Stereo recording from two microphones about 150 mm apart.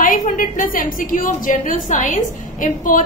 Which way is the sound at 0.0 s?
65° left (ahead or behind).